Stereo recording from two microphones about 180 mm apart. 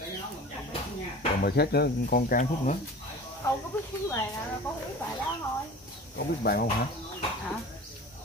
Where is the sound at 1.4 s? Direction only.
60° left (ahead or behind); by 2.8 s 45° left (ahead or behind).